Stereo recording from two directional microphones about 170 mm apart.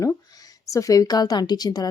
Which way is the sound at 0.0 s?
20° left (ahead or behind).